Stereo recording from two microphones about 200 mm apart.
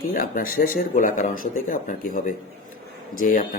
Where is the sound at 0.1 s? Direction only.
45° left (ahead or behind).